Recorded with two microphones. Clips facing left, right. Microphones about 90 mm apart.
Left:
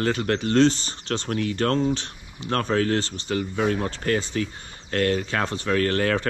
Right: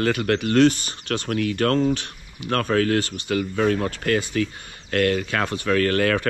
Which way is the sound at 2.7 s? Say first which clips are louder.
Right 3 dB; 70° right (ahead or behind).